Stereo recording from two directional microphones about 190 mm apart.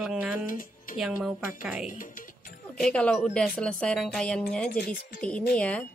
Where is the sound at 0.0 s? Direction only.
5° right (ahead or behind).